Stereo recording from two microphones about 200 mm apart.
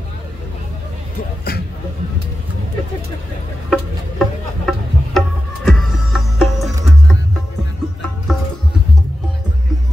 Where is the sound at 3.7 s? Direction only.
Centre (ahead or behind).